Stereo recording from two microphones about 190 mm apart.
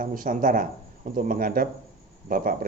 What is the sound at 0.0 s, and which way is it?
Speech, 45° right (ahead or behind).